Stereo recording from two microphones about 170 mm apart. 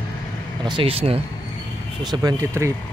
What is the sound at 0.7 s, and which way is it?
Speech, 30° right (ahead or behind).